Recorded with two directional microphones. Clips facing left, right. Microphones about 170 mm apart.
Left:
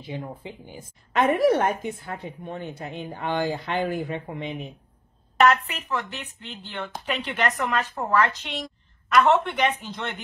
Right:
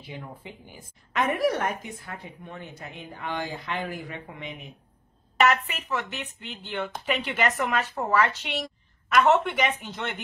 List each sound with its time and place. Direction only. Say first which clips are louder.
0.0 s a woman's voice: left 6 dB; 25° left (ahead or behind)
5.4 s a woman's voice: left 3 dB; 5° right (ahead or behind)